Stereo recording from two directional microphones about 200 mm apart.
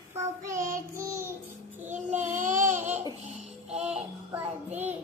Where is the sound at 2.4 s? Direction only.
40° right (ahead or behind).